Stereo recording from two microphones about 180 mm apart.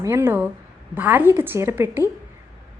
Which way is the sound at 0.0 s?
15° right (ahead or behind).